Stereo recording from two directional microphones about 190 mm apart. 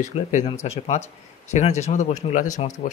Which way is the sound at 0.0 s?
40° left (ahead or behind).